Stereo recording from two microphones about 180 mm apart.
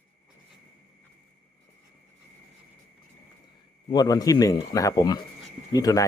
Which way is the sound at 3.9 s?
20° left (ahead or behind).